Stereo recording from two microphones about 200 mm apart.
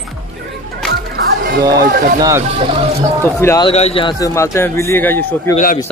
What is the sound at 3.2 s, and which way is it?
Speech, 15° left (ahead or behind).